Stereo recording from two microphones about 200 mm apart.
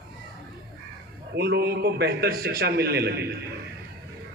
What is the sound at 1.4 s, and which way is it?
A man's voice, 55° right (ahead or behind).